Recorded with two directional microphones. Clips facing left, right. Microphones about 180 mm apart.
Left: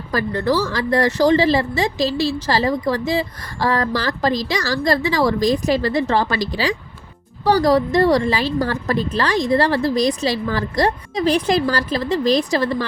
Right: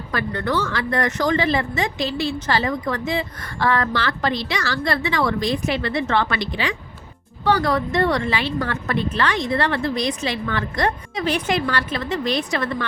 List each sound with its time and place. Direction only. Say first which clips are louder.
0.1 s speech: left 4 dB; 35° left (ahead or behind)